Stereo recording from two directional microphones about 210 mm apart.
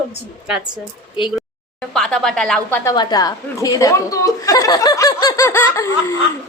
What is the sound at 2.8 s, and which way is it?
A woman's voice, 20° left (ahead or behind).